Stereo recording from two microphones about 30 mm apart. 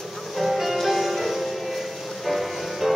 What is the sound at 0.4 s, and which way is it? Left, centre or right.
Music, centre.